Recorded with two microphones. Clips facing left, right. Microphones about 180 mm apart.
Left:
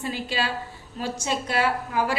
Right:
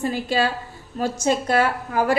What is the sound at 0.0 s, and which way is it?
A woman's voice, 45° right (ahead or behind).